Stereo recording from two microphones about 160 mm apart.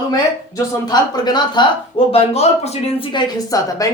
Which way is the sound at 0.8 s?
25° left (ahead or behind).